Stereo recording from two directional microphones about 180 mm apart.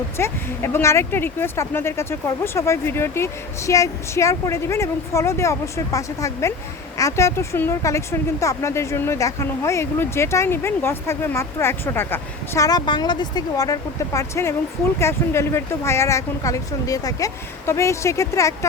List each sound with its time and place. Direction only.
0.2 s speech: 15° left (ahead or behind)